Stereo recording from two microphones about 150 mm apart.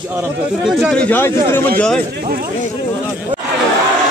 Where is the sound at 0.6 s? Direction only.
Centre (ahead or behind).